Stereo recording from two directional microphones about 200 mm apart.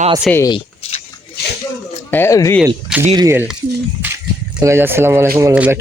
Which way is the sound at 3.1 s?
15° right (ahead or behind).